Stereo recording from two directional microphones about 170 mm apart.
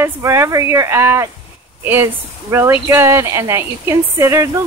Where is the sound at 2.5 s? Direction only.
15° right (ahead or behind).